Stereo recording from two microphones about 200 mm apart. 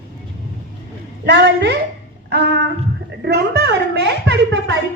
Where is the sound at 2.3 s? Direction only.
60° right (ahead or behind).